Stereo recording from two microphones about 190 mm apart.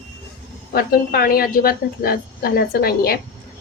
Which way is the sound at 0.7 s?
55° left (ahead or behind).